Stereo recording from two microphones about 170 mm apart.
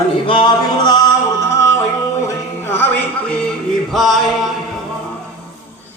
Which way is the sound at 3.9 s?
Centre (ahead or behind).